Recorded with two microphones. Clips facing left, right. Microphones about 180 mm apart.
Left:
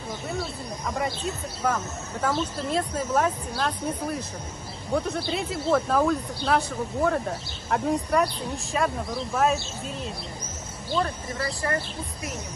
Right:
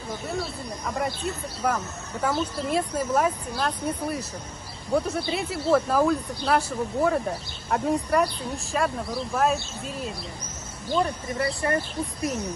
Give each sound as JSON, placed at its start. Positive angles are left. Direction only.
{"t": 0.4, "sound": "speech", "side_deg": 0}
{"t": 11.0, "sound": "speech", "side_deg": -20}